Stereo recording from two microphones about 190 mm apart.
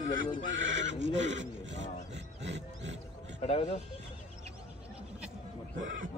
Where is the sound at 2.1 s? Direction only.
70° right (ahead or behind).